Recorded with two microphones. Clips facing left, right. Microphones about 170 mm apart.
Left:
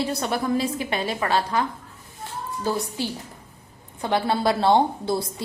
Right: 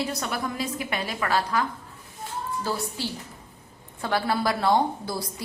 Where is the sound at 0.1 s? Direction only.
30° left (ahead or behind).